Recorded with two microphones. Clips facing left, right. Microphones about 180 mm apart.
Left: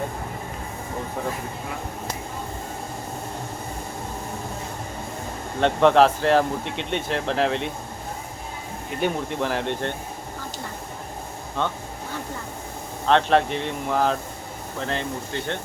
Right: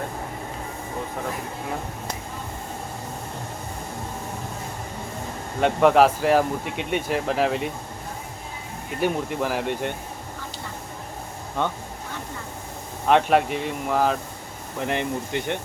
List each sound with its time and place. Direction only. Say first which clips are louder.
5.5 s speech: even; 5° right (ahead or behind)
9.0 s speech: right 1 dB; 5° right (ahead or behind)
11.6 s speech: right 1 dB; 10° right (ahead or behind)
13.1 s speech: even; 10° right (ahead or behind)
14.8 s speech: right 3 dB; 15° right (ahead or behind)